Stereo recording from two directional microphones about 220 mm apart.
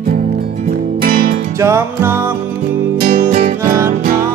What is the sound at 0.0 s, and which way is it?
Music, 40° right (ahead or behind).